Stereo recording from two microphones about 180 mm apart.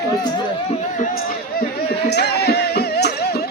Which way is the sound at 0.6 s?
45° left (ahead or behind).